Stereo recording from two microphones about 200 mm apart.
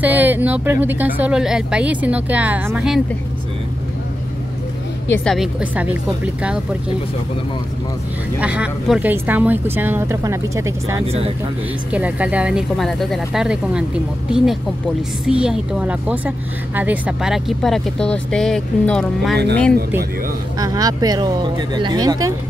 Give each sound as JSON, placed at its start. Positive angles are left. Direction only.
{"t": 0.0, "sound": "speech", "side_deg": -10}
{"t": 5.1, "sound": "a woman's voice", "side_deg": 0}
{"t": 8.4, "sound": "speech", "side_deg": -5}
{"t": 11.1, "sound": "speech", "side_deg": -30}
{"t": 11.9, "sound": "a woman's voice", "side_deg": -5}
{"t": 20.5, "sound": "speech", "side_deg": -20}